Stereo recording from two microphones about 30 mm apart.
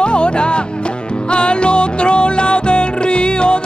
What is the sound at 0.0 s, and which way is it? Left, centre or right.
Music, left.